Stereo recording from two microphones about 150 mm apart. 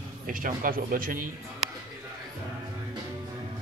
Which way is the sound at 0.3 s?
65° right (ahead or behind).